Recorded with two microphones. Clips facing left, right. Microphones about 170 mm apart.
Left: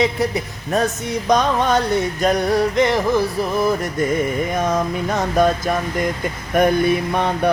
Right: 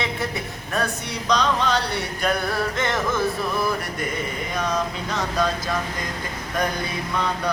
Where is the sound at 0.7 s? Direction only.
45° left (ahead or behind).